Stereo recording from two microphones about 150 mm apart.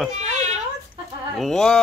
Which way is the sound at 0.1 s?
50° right (ahead or behind).